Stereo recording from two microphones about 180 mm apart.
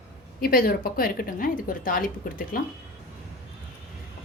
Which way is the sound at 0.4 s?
55° left (ahead or behind).